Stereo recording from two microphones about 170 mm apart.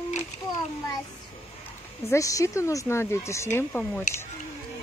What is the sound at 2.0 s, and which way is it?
Speech, 20° left (ahead or behind).